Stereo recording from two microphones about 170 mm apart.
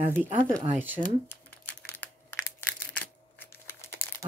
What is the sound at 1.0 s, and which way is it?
Typing, 10° left (ahead or behind).